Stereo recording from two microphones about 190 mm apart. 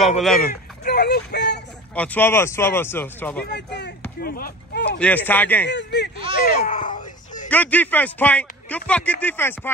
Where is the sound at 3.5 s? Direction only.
65° left (ahead or behind).